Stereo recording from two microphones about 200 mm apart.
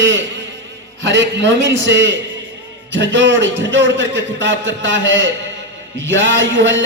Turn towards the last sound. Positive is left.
turn(degrees=-70)  # may be behind; listen again after turning